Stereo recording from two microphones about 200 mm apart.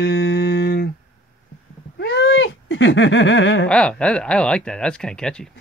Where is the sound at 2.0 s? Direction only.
60° left (ahead or behind).